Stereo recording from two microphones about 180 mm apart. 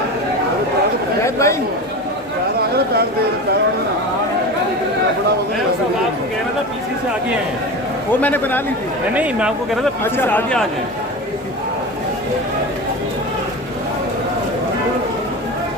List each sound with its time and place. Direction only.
1.2 s speech: 15° left (ahead or behind)
2.6 s a sound: 60° right (ahead or behind)
8.2 s speech: 10° left (ahead or behind)
9.1 s speech: 5° right (ahead or behind)
10.0 s speech: 10° left (ahead or behind)